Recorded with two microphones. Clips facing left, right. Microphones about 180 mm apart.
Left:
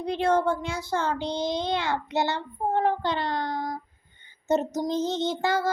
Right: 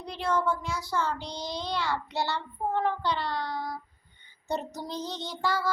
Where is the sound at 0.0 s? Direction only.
50° left (ahead or behind).